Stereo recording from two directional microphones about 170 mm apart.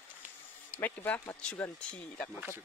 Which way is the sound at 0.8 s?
10° left (ahead or behind).